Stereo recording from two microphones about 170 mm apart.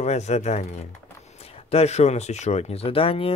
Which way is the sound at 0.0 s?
40° left (ahead or behind).